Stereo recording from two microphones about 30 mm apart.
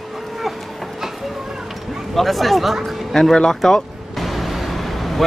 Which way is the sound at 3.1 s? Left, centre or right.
Centre.